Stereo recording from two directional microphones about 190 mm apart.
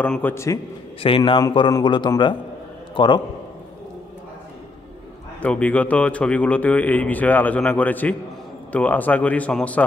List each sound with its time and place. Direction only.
0.0 s a man's voice: 10° left (ahead or behind)
1.0 s a man's voice: 30° left (ahead or behind)
5.4 s a man's voice: 5° left (ahead or behind)